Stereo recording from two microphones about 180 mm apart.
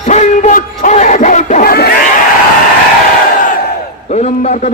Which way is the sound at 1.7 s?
55° left (ahead or behind).